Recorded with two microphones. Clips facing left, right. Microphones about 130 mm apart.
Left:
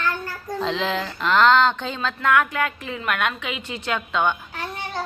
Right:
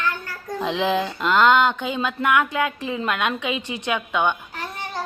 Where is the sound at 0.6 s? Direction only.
15° right (ahead or behind).